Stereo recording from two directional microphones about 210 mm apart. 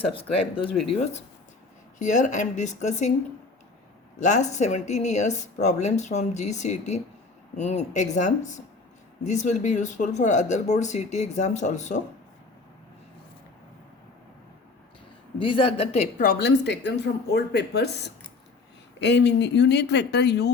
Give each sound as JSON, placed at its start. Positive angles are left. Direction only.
{"t": 0.1, "sound": "speech", "side_deg": 25}
{"t": 2.0, "sound": "speech", "side_deg": 35}
{"t": 4.2, "sound": "speech", "side_deg": 35}
{"t": 15.4, "sound": "speech", "side_deg": 25}